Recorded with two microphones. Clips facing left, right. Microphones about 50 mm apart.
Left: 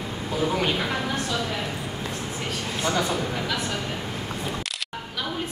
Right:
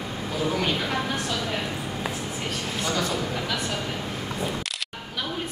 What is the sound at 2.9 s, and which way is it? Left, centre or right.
Speech, centre.